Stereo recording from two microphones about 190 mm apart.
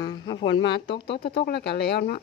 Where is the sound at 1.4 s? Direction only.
60° left (ahead or behind).